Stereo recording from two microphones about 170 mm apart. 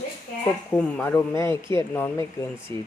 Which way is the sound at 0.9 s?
10° left (ahead or behind).